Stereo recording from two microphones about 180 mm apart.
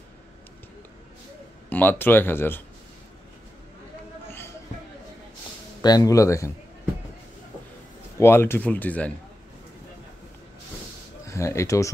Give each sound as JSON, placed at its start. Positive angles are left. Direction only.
{"t": 1.7, "sound": "speech", "side_deg": 10}
{"t": 5.8, "sound": "speech", "side_deg": 20}
{"t": 8.2, "sound": "speech", "side_deg": 15}
{"t": 11.2, "sound": "speech", "side_deg": 15}